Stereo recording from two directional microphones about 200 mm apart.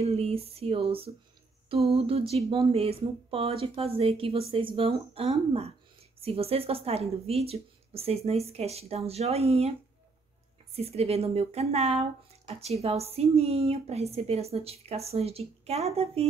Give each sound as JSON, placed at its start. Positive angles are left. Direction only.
{"t": 0.0, "sound": "speech", "side_deg": -30}
{"t": 10.7, "sound": "speech", "side_deg": -30}